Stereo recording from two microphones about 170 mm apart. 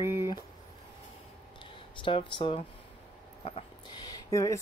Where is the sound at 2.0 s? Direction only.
30° left (ahead or behind).